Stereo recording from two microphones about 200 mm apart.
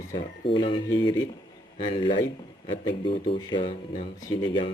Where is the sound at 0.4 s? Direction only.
25° left (ahead or behind).